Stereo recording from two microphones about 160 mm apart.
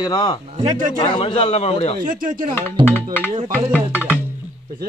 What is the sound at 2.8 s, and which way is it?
Speech, 10° left (ahead or behind).